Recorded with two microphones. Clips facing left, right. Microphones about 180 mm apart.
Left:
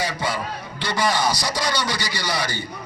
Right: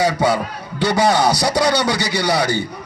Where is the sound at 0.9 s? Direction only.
65° right (ahead or behind).